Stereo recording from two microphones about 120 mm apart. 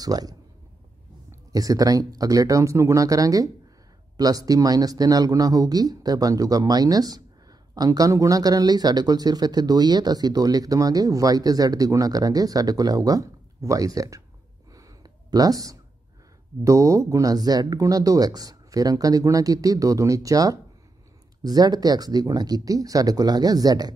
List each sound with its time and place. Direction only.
0.0 s speech: 30° right (ahead or behind)
1.5 s speech: 30° right (ahead or behind)
14.7 s a sound: 30° right (ahead or behind)
16.6 s speech: 25° right (ahead or behind)